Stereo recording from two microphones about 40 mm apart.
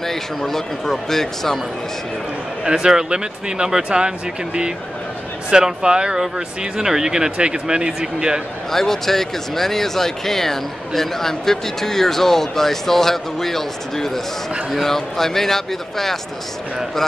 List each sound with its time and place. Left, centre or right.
0.0 s speech: centre
2.6 s a man's voice: centre
5.5 s a man's voice: centre
8.7 s speech: centre